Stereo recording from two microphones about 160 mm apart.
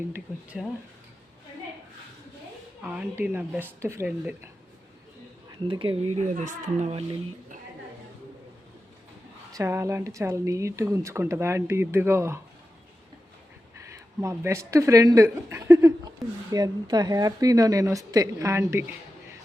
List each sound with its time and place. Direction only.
0.1 s speech: 5° right (ahead or behind)
2.8 s speech: 10° right (ahead or behind)
5.5 s speech: 30° right (ahead or behind)
9.5 s speech: 20° right (ahead or behind)
14.2 s speech: 15° right (ahead or behind)